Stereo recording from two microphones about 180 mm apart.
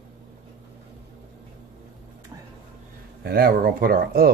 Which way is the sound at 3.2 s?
55° right (ahead or behind).